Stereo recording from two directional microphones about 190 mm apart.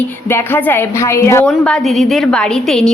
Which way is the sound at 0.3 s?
10° left (ahead or behind).